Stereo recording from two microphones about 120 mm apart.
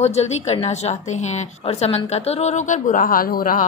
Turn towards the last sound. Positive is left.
turn(degrees=90)